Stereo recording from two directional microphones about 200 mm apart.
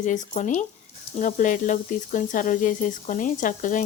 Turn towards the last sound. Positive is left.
turn(degrees=40)  # may be behind; listen again after turning